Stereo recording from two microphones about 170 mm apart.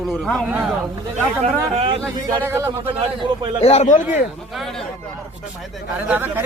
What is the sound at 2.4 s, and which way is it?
Speech, 15° right (ahead or behind).